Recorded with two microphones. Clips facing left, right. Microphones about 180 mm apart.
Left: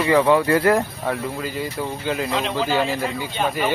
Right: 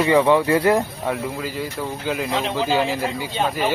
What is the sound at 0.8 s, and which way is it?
Speech, 5° right (ahead or behind).